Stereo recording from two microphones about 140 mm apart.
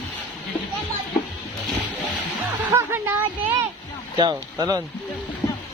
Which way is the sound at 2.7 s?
20° right (ahead or behind).